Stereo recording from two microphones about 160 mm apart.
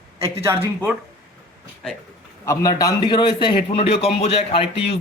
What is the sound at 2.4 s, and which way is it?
A man's voice, 20° left (ahead or behind).